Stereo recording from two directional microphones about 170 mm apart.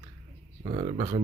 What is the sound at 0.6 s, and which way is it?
Speech, 40° right (ahead or behind).